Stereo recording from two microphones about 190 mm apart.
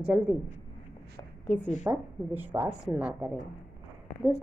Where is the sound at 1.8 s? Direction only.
10° right (ahead or behind).